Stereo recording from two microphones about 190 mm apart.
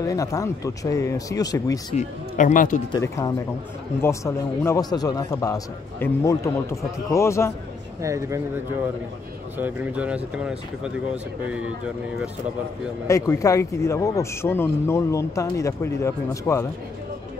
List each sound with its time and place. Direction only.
0.0 s speech: 15° left (ahead or behind)
2.0 s speech: 40° left (ahead or behind)
3.0 s speech: 15° left (ahead or behind)
8.0 s speech: 15° right (ahead or behind)
9.6 s speech: 5° right (ahead or behind)
13.0 s speech: 15° left (ahead or behind)